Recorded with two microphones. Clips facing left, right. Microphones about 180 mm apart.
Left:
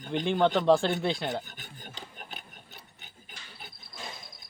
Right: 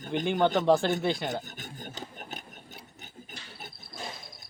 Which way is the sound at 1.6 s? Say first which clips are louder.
Right 5 dB; 45° right (ahead or behind).